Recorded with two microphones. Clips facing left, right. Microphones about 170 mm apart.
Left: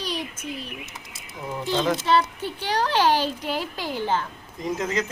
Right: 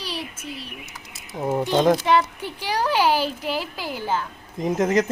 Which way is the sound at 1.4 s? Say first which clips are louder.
Right 6 dB; 50° right (ahead or behind).